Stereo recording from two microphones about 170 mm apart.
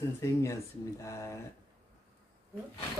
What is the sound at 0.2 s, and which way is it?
Speech, 15° left (ahead or behind).